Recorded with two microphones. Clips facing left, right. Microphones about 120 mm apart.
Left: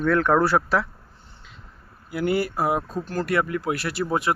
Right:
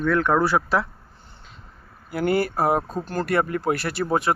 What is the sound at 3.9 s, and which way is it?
Speech, 35° right (ahead or behind).